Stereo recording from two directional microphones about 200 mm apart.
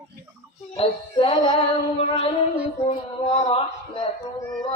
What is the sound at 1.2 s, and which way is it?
Speech, 25° left (ahead or behind).